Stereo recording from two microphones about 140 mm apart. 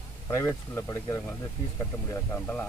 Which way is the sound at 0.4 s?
25° left (ahead or behind).